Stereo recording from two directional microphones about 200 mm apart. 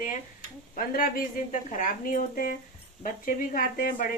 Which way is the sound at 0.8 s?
45° left (ahead or behind).